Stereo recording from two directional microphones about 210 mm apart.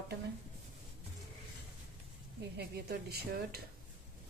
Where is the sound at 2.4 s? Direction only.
50° right (ahead or behind).